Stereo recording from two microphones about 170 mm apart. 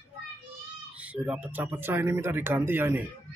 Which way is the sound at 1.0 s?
5° right (ahead or behind).